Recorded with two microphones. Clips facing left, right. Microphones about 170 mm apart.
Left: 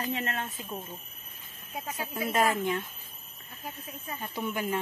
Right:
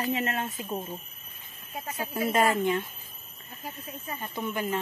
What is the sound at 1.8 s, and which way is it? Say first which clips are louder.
Speech: right 4 dB; 10° left (ahead or behind).